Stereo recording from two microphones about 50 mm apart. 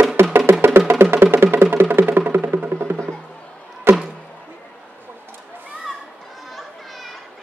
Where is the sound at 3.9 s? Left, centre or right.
Right.